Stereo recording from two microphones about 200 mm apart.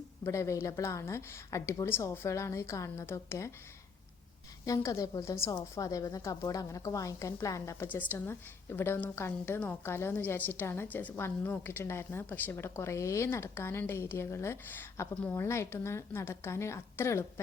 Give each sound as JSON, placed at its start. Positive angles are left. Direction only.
{"t": 0.3, "sound": "a woman's voice", "side_deg": 15}
{"t": 4.6, "sound": "a woman's voice", "side_deg": 15}